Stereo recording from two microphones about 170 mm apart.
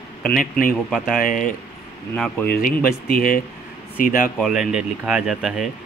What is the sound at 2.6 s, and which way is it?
Speech, 55° left (ahead or behind).